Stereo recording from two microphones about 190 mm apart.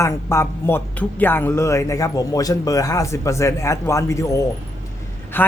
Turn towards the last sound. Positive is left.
turn(degrees=10)  # may be behind; listen again after turning